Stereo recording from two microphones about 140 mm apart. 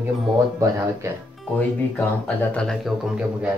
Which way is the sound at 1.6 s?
10° left (ahead or behind).